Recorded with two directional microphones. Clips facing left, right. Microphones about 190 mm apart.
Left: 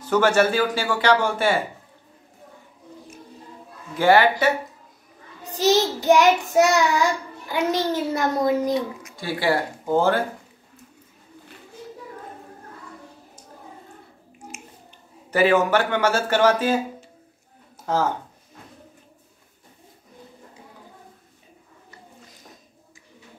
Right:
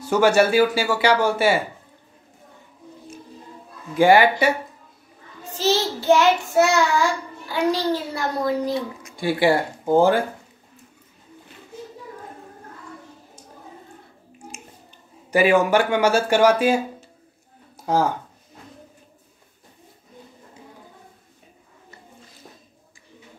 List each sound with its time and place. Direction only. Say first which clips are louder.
0.0 s speech: right 2 dB; 10° right (ahead or behind)
4.0 s speech: right 2 dB; 15° right (ahead or behind)
5.4 s child singing: left 2 dB; 15° left (ahead or behind)
7.7 s a child's voice: left 1 dB; 20° left (ahead or behind)
9.1 s speech: right 4 dB; 15° right (ahead or behind)
14.5 s finger snapping: even; 30° right (ahead or behind)
15.3 s speech: right 1 dB; 10° right (ahead or behind)
17.9 s speech: right 3 dB; 10° right (ahead or behind)